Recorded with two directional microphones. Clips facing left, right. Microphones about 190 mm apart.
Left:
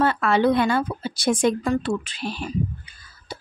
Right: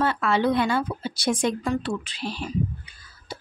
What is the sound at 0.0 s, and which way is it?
A woman's voice, 50° left (ahead or behind).